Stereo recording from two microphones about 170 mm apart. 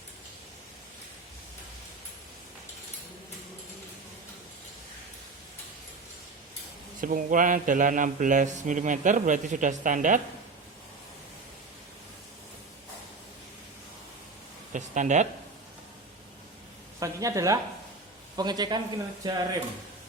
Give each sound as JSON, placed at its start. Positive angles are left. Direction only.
{"t": 7.0, "sound": "speech", "side_deg": -50}
{"t": 14.7, "sound": "speech", "side_deg": -45}
{"t": 17.0, "sound": "speech", "side_deg": -20}